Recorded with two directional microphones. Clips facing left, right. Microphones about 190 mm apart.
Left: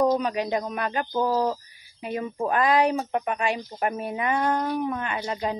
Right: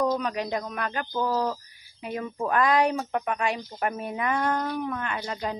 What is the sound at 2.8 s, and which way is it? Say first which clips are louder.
Speech: left 2 dB; 15° left (ahead or behind).